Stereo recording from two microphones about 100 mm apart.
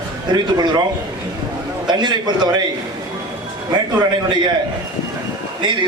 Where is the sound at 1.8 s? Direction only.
45° right (ahead or behind).